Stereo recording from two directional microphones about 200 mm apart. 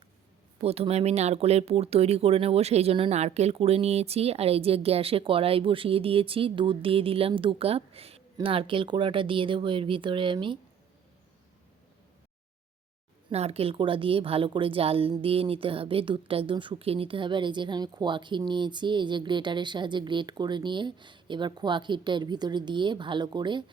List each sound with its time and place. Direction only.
0.6 s a woman's voice: 30° right (ahead or behind)
13.3 s a woman's voice: 30° right (ahead or behind)